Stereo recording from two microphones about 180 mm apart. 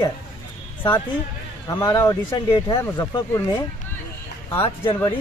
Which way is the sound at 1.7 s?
20° left (ahead or behind).